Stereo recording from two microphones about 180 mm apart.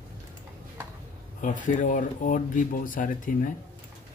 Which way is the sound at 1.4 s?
45° left (ahead or behind).